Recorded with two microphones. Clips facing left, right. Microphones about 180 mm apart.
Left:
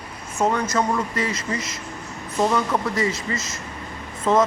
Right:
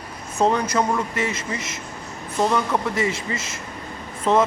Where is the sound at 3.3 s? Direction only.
20° right (ahead or behind).